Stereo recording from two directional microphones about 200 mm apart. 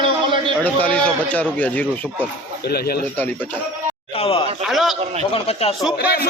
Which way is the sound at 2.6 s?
50° left (ahead or behind).